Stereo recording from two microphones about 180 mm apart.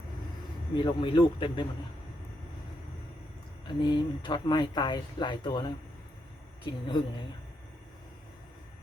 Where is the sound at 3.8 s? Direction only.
25° left (ahead or behind).